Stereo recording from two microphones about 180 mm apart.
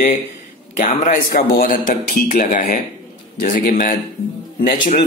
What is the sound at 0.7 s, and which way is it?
A man's voice, 45° left (ahead or behind).